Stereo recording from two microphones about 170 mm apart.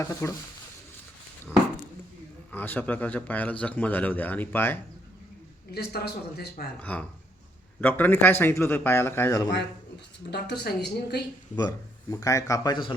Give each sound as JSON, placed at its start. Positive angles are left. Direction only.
{"t": 0.0, "sound": "speech", "side_deg": 15}
{"t": 2.5, "sound": "speech", "side_deg": 10}
{"t": 5.7, "sound": "a man's voice", "side_deg": 70}
{"t": 6.7, "sound": "speech", "side_deg": 10}
{"t": 10.2, "sound": "a man's voice", "side_deg": 75}
{"t": 12.1, "sound": "speech", "side_deg": 20}